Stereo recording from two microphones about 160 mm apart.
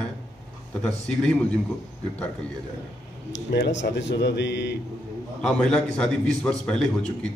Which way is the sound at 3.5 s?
90° left.